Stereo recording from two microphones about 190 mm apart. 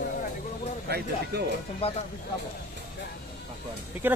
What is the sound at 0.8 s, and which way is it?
Speech, 55° right (ahead or behind).